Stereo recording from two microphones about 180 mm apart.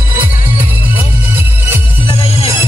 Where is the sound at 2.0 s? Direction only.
30° left (ahead or behind).